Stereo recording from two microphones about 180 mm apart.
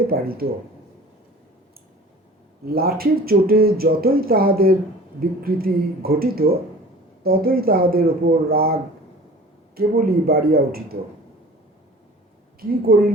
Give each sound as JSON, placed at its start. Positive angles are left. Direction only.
{"t": 0.1, "sound": "speech", "side_deg": -55}
{"t": 2.6, "sound": "speech", "side_deg": -55}
{"t": 12.9, "sound": "speech", "side_deg": -60}